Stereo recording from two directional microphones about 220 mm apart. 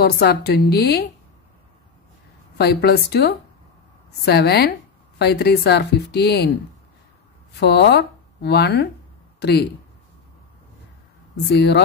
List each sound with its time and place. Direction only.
0.0 s speech: 45° left (ahead or behind)
2.5 s speech: 45° left (ahead or behind)
7.6 s speech: 50° left (ahead or behind)
11.5 s speech: 50° left (ahead or behind)